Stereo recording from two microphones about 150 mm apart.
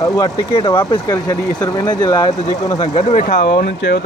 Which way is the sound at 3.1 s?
75° left (ahead or behind).